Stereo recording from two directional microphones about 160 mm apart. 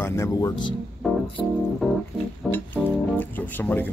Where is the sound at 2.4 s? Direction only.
5° left (ahead or behind).